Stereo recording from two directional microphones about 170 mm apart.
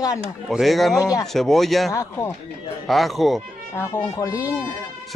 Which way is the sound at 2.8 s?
Centre (ahead or behind).